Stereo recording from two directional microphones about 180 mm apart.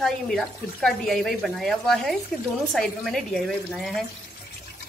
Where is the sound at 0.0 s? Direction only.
Centre (ahead or behind).